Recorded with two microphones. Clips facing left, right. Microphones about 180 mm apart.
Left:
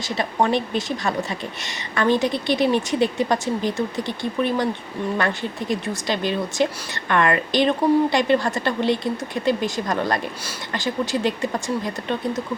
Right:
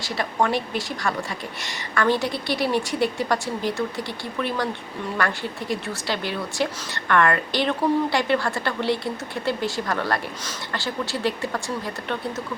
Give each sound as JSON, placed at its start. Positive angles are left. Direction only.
{"t": 0.2, "sound": "a woman's voice", "side_deg": 20}